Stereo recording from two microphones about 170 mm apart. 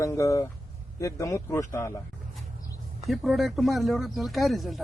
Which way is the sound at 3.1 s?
Centre (ahead or behind).